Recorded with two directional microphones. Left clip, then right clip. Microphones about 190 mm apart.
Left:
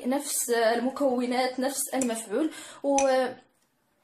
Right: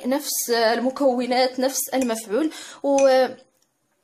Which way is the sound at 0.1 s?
45° right (ahead or behind).